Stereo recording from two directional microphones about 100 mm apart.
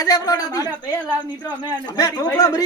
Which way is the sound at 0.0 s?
40° left (ahead or behind).